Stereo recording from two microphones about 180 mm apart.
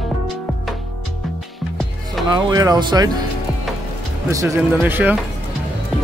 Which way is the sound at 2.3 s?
20° right (ahead or behind).